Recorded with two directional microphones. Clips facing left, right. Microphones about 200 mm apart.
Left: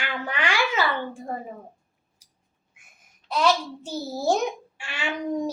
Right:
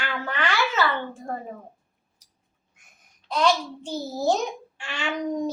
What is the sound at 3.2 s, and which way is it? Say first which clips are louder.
Speech: even; 5° left (ahead or behind).